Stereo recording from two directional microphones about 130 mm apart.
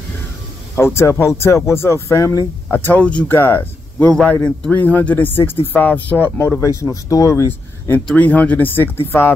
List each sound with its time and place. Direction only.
0.7 s speech: 20° left (ahead or behind)
4.1 s a man's voice: 5° left (ahead or behind)